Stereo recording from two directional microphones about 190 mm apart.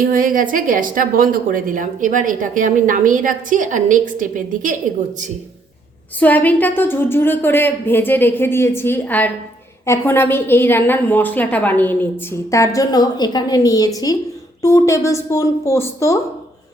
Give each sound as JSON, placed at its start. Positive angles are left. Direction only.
{"t": 0.0, "sound": "a woman's voice", "side_deg": -45}
{"t": 6.1, "sound": "a woman's voice", "side_deg": 10}